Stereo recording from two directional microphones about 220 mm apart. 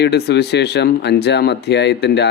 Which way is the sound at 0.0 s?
50° left (ahead or behind).